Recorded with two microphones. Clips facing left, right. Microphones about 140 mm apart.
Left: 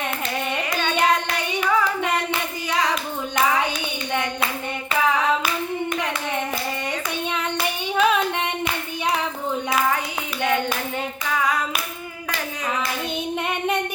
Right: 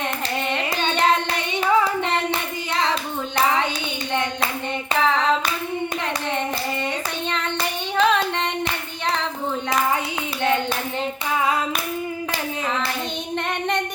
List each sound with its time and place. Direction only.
1.6 s hands: 30° right (ahead or behind)
7.3 s child singing: 10° left (ahead or behind)
8.6 s clapping: 10° left (ahead or behind)